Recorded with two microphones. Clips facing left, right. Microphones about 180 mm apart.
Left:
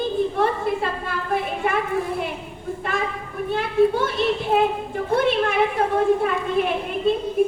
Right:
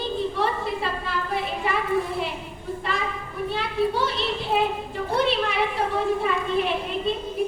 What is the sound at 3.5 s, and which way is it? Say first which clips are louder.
A woman's voice: left 7 dB; 50° left (ahead or behind).